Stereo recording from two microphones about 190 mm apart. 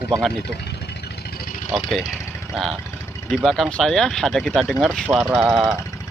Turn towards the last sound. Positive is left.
turn(degrees=0)  # may be behind; listen again after turning